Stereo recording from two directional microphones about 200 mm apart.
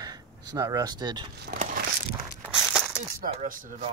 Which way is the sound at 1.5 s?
45° right (ahead or behind).